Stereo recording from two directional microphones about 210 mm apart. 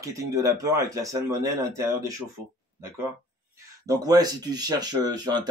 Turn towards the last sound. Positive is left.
turn(degrees=-20)  # may be behind; listen again after turning